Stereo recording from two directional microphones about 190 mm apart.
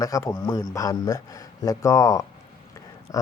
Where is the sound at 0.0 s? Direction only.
15° left (ahead or behind).